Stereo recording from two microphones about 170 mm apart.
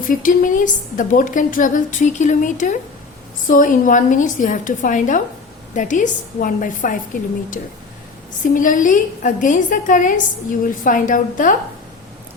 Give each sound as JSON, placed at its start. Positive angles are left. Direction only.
{"t": 0.0, "sound": "a woman's voice", "side_deg": 55}
{"t": 8.5, "sound": "a woman's voice", "side_deg": 50}